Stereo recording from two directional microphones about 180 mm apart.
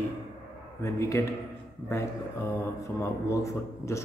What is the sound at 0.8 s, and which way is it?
Speech, 15° left (ahead or behind).